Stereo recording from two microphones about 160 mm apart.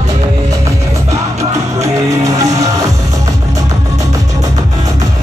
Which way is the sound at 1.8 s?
20° right (ahead or behind).